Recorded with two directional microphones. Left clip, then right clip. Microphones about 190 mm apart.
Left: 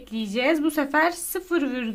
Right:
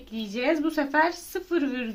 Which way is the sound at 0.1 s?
30° left (ahead or behind).